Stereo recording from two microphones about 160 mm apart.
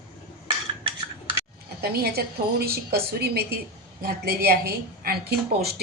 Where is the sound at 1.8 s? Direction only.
75° right (ahead or behind).